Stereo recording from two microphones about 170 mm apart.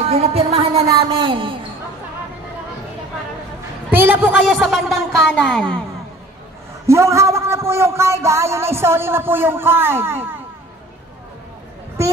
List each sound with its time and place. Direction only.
0.0 s speech: 35° right (ahead or behind)
3.9 s a sound: 10° right (ahead or behind)
4.4 s speech: centre (ahead or behind)
6.9 s a man's voice: 15° right (ahead or behind)